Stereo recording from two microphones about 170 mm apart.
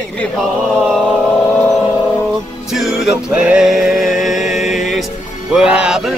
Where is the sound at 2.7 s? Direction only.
Centre (ahead or behind).